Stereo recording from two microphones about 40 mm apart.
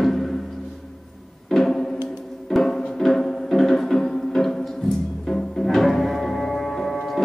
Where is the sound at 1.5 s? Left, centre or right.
Centre.